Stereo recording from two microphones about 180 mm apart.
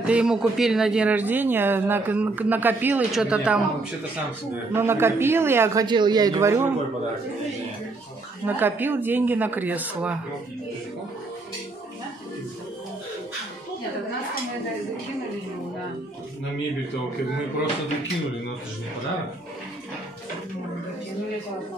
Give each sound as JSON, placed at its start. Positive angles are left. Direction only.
{"t": 0.0, "sound": "speech", "side_deg": -5}
{"t": 4.7, "sound": "speech", "side_deg": -15}
{"t": 5.9, "sound": "a man's voice", "side_deg": -25}
{"t": 8.5, "sound": "speech", "side_deg": -10}